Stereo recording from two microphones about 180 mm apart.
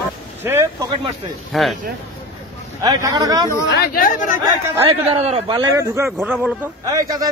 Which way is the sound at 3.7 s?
55° left (ahead or behind).